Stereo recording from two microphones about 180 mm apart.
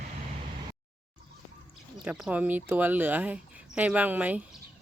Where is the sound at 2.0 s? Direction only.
5° right (ahead or behind).